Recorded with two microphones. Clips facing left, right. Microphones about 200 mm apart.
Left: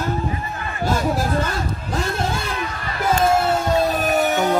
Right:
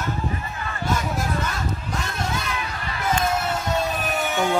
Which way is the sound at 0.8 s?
30° left (ahead or behind).